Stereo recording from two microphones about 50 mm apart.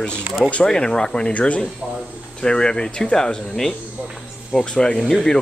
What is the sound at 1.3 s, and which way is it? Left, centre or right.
Speech, left.